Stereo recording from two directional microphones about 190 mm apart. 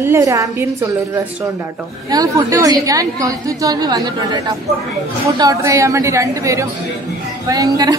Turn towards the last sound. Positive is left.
turn(degrees=-20)  # may be behind; listen again after turning